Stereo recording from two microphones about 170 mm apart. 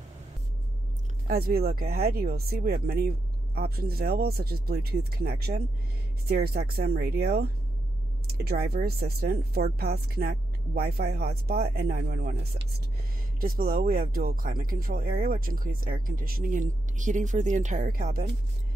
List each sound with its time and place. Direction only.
1.2 s speech: 60° right (ahead or behind); by 12.6 s 75° right (ahead or behind)
13.4 s speech: 60° right (ahead or behind)